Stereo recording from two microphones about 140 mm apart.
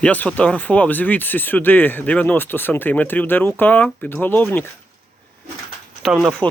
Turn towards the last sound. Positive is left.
turn(degrees=-5)  # may be behind; listen again after turning